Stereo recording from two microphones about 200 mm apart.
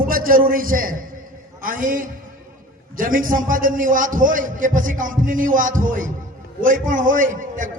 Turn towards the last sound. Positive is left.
turn(degrees=-40)  # may be behind; listen again after turning